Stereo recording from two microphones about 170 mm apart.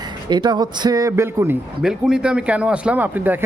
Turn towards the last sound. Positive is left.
turn(degrees=-10)  # may be behind; listen again after turning